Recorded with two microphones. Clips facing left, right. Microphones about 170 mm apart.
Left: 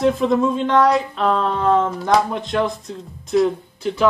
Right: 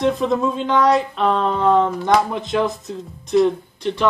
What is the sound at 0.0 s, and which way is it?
Speech, centre (ahead or behind).